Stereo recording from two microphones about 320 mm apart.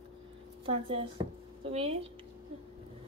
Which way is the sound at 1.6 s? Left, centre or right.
Centre.